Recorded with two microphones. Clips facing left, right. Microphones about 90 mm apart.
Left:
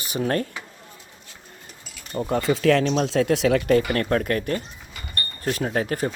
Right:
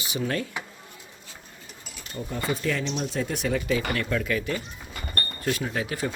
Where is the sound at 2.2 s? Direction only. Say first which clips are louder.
Left 9 dB; 80° left; by 3.8 s 65° left (ahead or behind).